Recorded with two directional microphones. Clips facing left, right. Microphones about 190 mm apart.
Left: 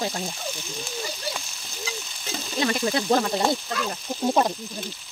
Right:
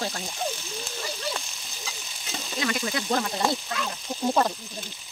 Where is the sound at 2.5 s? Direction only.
35° left (ahead or behind).